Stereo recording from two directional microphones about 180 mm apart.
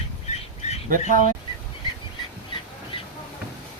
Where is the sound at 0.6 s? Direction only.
35° left (ahead or behind).